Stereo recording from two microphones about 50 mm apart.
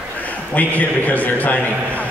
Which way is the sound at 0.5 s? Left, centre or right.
Left.